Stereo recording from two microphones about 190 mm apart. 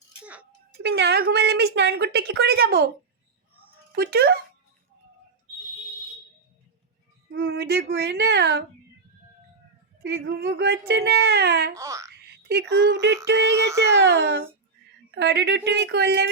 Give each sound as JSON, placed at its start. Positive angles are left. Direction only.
{"t": 0.8, "sound": "a woman's voice", "side_deg": -60}
{"t": 3.9, "sound": "a woman's voice", "side_deg": -55}
{"t": 7.3, "sound": "a woman's voice", "side_deg": -55}
{"t": 10.0, "sound": "a woman's voice", "side_deg": -60}
{"t": 11.7, "sound": "speech", "side_deg": -15}
{"t": 12.5, "sound": "a woman's voice", "side_deg": -60}
{"t": 13.5, "sound": "speech", "side_deg": -15}
{"t": 13.9, "sound": "a child's voice", "side_deg": -65}